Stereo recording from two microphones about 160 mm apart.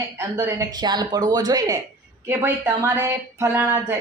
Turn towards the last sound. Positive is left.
turn(degrees=-15)  # may be behind; listen again after turning